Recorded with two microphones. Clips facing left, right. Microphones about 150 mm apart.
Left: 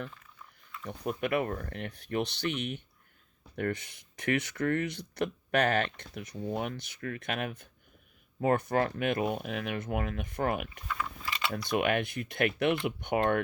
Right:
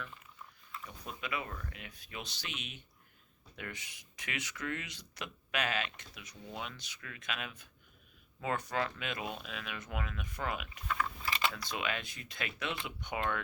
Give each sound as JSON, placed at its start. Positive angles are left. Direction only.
{"t": 0.9, "sound": "speech", "side_deg": 60}